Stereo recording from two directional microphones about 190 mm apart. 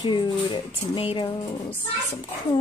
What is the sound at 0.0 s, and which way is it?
A woman's voice, 25° left (ahead or behind).